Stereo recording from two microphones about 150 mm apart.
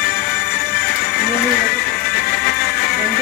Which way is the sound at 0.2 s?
90° left.